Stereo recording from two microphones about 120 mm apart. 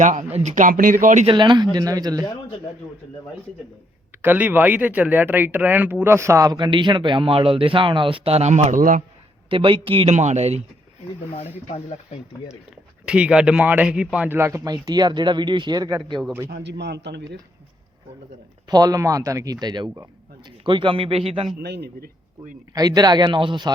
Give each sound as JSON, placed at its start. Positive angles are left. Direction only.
{"t": 0.0, "sound": "speech", "side_deg": -90}
{"t": 1.3, "sound": "speech", "side_deg": -40}
{"t": 4.2, "sound": "speech", "side_deg": -15}
{"t": 9.5, "sound": "speech", "side_deg": -45}
{"t": 10.1, "sound": "speech", "side_deg": -70}
{"t": 12.5, "sound": "speech", "side_deg": -5}
{"t": 14.3, "sound": "speech", "side_deg": -25}
{"t": 18.7, "sound": "a man's voice", "side_deg": -30}
{"t": 22.7, "sound": "speech", "side_deg": -30}